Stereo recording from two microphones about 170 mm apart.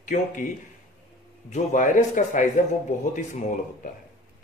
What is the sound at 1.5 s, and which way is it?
Speech, 45° left (ahead or behind).